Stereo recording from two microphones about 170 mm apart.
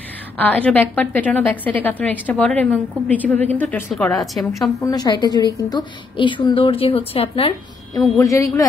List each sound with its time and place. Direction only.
0.4 s a woman's voice: 10° left (ahead or behind)
4.7 s a woman's voice: 20° left (ahead or behind)
8.2 s a woman's voice: 15° left (ahead or behind)